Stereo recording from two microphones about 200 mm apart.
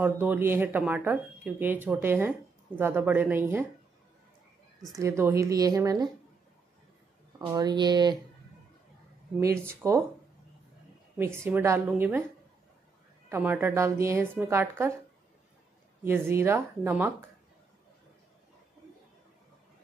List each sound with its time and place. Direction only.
0.0 s speech: 10° right (ahead or behind)
4.9 s speech: 15° right (ahead or behind)
7.3 s speech: 20° right (ahead or behind)
9.4 s speech: 15° right (ahead or behind)
11.1 s speech: 10° right (ahead or behind)
13.3 s speech: 10° right (ahead or behind)
16.0 s speech: 10° right (ahead or behind)